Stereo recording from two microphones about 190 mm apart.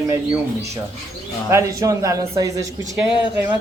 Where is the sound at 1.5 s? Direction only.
15° right (ahead or behind).